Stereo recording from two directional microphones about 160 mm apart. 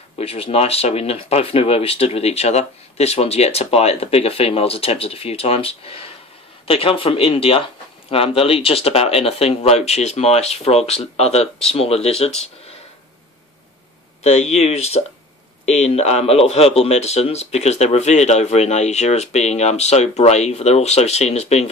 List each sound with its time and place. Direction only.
0.2 s speech: 40° left (ahead or behind)
14.2 s a man's voice: 45° left (ahead or behind)